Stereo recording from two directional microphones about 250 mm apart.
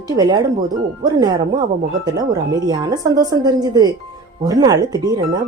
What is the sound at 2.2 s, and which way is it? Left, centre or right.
Speech, centre.